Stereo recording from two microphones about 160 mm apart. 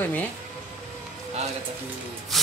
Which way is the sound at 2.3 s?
Centre (ahead or behind).